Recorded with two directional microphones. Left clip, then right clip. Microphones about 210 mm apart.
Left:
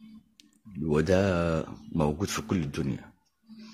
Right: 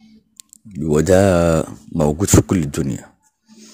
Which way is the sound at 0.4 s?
30° right (ahead or behind).